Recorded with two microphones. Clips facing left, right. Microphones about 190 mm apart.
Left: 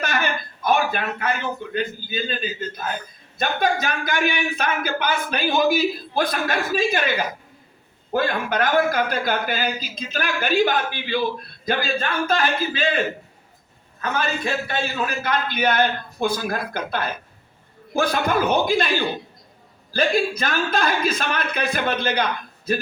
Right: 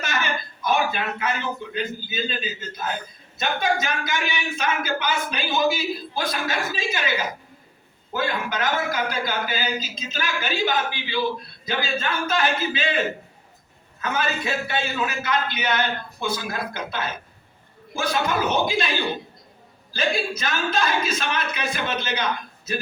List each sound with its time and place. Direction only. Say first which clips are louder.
0.0 s a sound: left 3 dB; 55° left (ahead or behind)
1.7 s speech: left 2 dB; 50° left (ahead or behind)
8.1 s speech: left 4 dB; 55° left (ahead or behind)
14.0 s speech: left 1 dB; 45° left (ahead or behind)
19.9 s speech: left 4 dB; 50° left (ahead or behind)